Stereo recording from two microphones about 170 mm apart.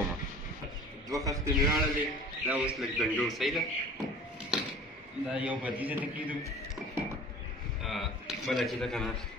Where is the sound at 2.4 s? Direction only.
10° right (ahead or behind).